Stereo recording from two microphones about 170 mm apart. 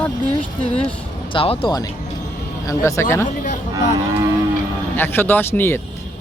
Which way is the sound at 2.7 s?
15° left (ahead or behind).